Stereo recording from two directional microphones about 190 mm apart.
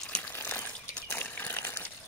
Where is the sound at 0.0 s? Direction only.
5° left (ahead or behind).